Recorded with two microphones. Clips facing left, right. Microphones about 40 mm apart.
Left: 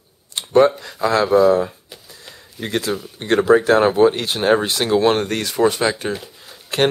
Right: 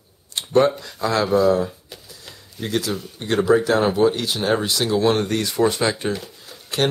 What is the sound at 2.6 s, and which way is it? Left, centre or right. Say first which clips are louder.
Speech: left 2 dB; left.